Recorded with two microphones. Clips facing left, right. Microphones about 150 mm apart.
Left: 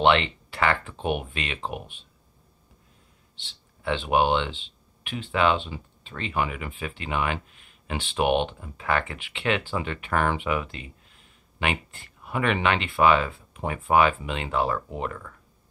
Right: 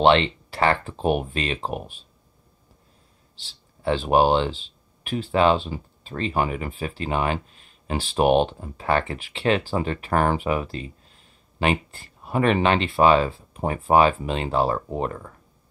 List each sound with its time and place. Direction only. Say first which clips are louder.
0.0 s speech: right 3 dB; 35° right (ahead or behind)
3.3 s speech: right 1 dB; 35° right (ahead or behind)